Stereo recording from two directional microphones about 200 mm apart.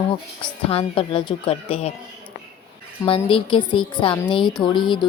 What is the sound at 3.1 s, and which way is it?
A woman's voice, 25° left (ahead or behind).